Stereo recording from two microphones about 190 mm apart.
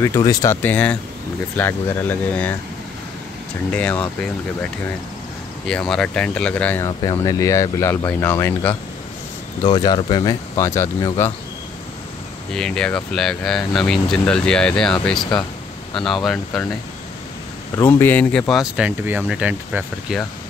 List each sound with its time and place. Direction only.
0.0 s speech: 15° left (ahead or behind)
3.7 s speech: 5° left (ahead or behind)
5.7 s speech: 5° left (ahead or behind)
7.0 s speech: 20° left (ahead or behind)
9.6 s speech: 20° left (ahead or behind)
12.5 s speech: 5° left (ahead or behind)
17.7 s speech: 10° left (ahead or behind); by 20.2 s 5° right (ahead or behind)